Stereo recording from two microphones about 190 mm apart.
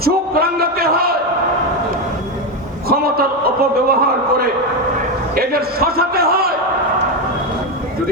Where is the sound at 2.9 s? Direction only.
50° right (ahead or behind).